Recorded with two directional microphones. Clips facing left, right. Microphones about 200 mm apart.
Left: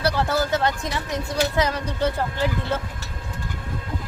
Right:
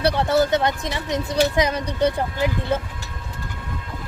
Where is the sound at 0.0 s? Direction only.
20° right (ahead or behind).